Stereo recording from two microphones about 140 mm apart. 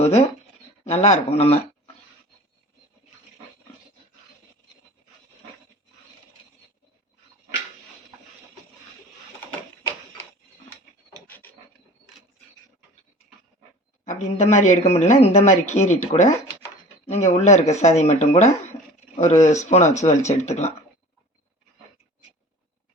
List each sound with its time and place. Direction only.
0.0 s speech: 50° left (ahead or behind)
14.0 s speech: 60° left (ahead or behind)